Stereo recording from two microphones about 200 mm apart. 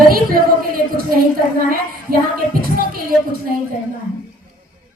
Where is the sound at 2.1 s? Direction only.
45° right (ahead or behind).